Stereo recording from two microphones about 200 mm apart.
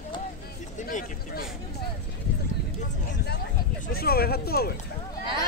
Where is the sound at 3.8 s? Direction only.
50° left (ahead or behind).